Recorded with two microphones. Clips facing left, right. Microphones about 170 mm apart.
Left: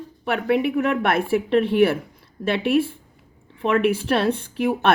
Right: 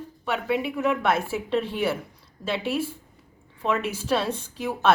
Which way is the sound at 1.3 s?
60° left (ahead or behind).